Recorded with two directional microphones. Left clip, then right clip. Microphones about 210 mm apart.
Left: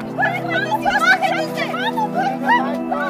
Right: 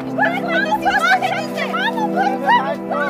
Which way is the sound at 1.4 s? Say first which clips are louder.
Even; 10° left (ahead or behind).